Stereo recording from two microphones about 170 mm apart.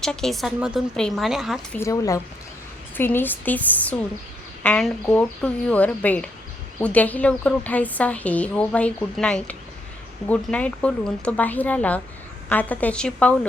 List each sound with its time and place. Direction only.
0.0 s a woman's voice: 5° left (ahead or behind)
1.7 s a woman's voice: 20° left (ahead or behind)